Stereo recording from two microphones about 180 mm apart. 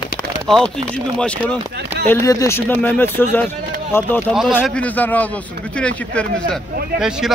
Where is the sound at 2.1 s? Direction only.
15° left (ahead or behind).